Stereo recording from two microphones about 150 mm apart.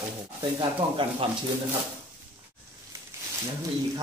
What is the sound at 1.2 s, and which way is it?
Speech, 35° right (ahead or behind).